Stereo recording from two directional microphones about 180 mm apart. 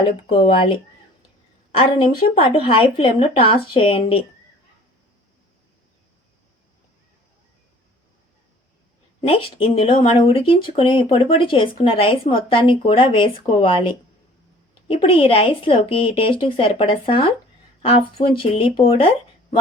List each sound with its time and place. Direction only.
0.0 s speech: 25° left (ahead or behind)
2.4 s speech: 30° left (ahead or behind)
9.2 s speech: 30° left (ahead or behind)